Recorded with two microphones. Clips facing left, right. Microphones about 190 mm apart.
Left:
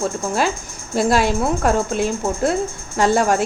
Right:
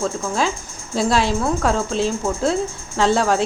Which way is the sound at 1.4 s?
15° left (ahead or behind).